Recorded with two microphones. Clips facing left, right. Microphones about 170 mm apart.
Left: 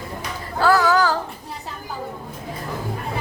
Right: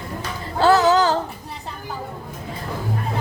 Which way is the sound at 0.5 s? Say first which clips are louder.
Right 2 dB; 25° right (ahead or behind).